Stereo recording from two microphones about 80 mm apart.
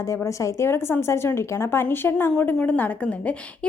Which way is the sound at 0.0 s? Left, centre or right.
Left.